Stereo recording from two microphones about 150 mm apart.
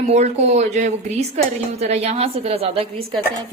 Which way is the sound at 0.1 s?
45° right (ahead or behind).